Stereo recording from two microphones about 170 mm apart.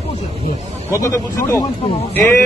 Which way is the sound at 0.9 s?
20° left (ahead or behind).